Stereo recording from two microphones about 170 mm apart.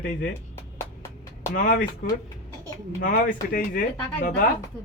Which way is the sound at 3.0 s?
50° left (ahead or behind).